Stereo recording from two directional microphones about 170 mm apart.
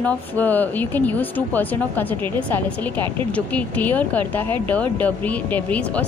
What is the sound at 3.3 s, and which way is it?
A woman's voice, 10° left (ahead or behind).